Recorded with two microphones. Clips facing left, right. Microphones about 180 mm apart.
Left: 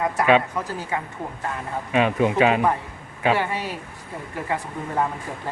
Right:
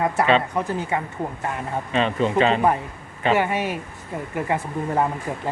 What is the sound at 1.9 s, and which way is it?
Speech, 10° left (ahead or behind).